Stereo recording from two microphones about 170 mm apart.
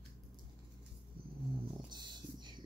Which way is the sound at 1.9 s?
25° right (ahead or behind).